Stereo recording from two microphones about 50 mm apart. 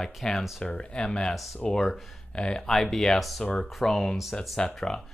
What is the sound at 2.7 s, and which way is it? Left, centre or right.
Speech, centre.